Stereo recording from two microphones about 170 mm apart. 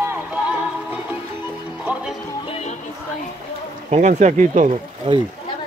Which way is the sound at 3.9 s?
45° right (ahead or behind).